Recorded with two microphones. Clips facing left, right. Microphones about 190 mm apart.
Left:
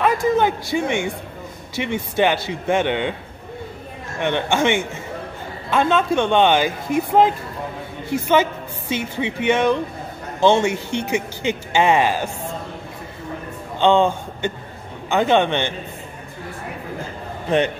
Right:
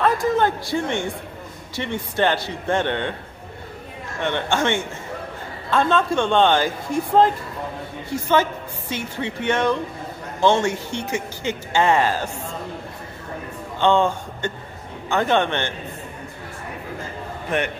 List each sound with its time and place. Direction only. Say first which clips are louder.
0.0 s a man's voice: left 2 dB; 15° left (ahead or behind)
4.2 s speech: left 3 dB; 15° left (ahead or behind)
8.9 s speech: left 4 dB; 15° left (ahead or behind)
13.7 s speech: left 2 dB; 20° left (ahead or behind)